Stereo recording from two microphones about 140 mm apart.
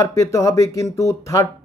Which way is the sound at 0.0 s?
25° left (ahead or behind).